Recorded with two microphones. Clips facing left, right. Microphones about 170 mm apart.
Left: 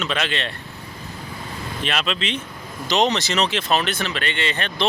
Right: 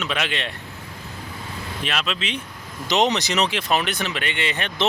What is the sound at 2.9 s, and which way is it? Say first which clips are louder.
Speech: even; 20° right (ahead or behind).